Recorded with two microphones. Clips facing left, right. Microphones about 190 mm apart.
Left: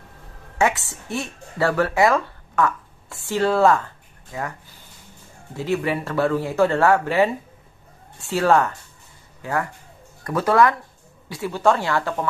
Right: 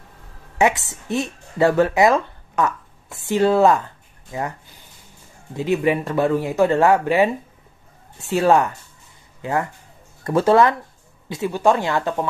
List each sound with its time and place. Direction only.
0.6 s speech: 20° right (ahead or behind)
5.6 s speech: 15° right (ahead or behind)